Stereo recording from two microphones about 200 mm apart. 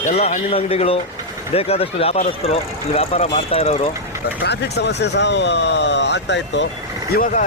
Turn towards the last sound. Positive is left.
turn(degrees=45)  # may be behind; listen again after turning